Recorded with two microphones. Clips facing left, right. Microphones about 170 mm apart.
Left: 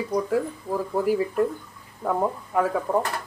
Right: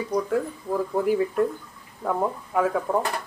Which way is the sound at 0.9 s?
5° left (ahead or behind).